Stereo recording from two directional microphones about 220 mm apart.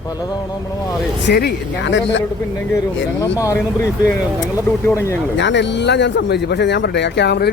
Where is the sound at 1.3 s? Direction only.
50° left (ahead or behind).